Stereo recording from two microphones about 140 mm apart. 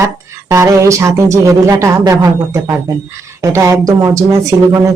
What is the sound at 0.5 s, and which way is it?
Speech, 20° right (ahead or behind).